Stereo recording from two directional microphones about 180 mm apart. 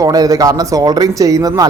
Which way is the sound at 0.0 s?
20° right (ahead or behind).